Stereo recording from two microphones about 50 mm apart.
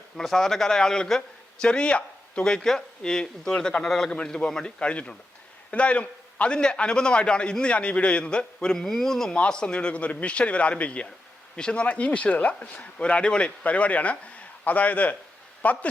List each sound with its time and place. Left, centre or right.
0.2 s speech: centre
4.1 s a man's voice: centre